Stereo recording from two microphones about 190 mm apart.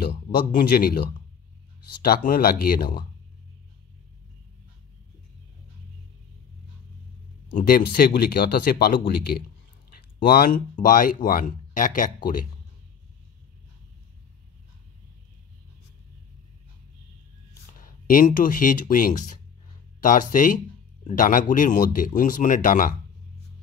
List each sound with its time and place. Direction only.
0.3 s speech: 50° left (ahead or behind)
2.0 s speech: 50° left (ahead or behind)
7.5 s speech: 50° left (ahead or behind)
17.7 s speech: 45° left (ahead or behind)